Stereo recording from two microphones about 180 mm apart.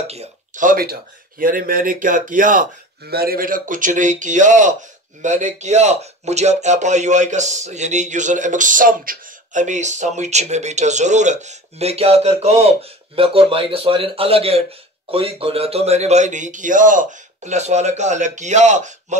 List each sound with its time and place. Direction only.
0.0 s speech: 35° right (ahead or behind)